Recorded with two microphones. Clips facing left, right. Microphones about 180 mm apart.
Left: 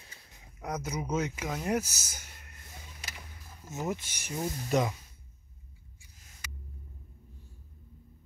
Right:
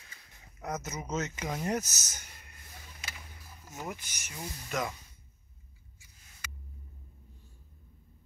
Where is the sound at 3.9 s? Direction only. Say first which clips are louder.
Left 7 dB; 30° left (ahead or behind).